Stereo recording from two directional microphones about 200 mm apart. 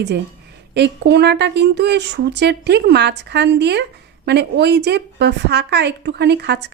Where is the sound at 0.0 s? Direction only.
55° right (ahead or behind).